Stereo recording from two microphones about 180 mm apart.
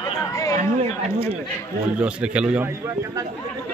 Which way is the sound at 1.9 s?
5° right (ahead or behind).